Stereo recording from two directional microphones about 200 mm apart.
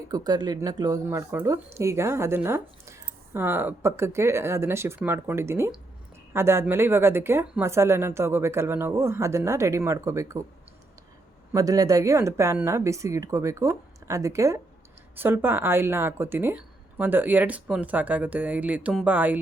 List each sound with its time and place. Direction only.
0.1 s speech: 20° right (ahead or behind)
11.5 s speech: 15° right (ahead or behind)